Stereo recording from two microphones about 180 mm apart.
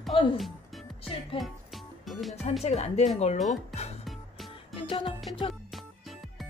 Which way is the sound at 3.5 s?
35° left (ahead or behind).